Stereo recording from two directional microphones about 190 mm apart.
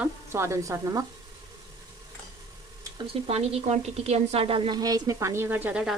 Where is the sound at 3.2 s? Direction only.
35° right (ahead or behind).